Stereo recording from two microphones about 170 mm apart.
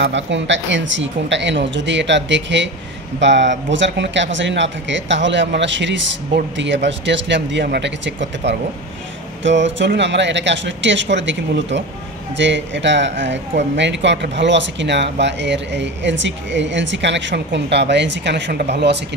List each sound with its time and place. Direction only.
0.0 s speech: 90° right